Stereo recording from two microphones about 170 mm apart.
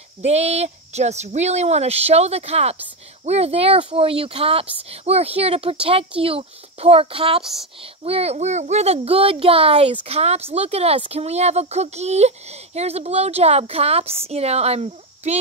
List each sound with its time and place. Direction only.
0.2 s speech: 40° right (ahead or behind)